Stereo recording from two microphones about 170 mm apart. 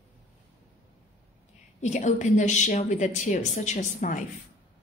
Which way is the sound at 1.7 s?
45° left (ahead or behind).